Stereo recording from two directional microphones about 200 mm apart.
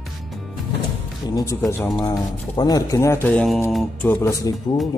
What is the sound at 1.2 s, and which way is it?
Speech, 15° left (ahead or behind).